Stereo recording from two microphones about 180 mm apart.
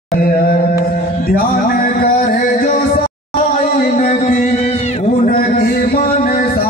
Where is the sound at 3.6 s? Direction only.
40° left (ahead or behind).